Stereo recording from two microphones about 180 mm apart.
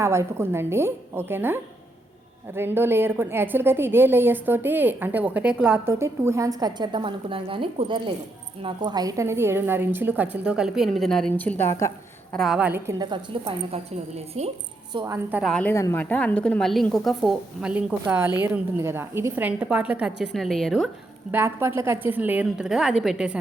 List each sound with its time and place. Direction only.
0.0 s a woman's voice: 15° right (ahead or behind)
2.6 s a woman's voice: 15° right (ahead or behind); by 11.9 s 15° left (ahead or behind)
12.3 s a woman's voice: centre (ahead or behind); by 14.5 s 35° right (ahead or behind)
15.0 s a woman's voice: 15° right (ahead or behind)
15.4 s speech: 5° left (ahead or behind)
15.7 s a woman's voice: 15° left (ahead or behind)
21.3 s a woman's voice: 10° right (ahead or behind)